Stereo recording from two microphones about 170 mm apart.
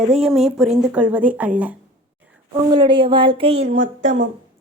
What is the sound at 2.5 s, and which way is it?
Speech, 25° right (ahead or behind).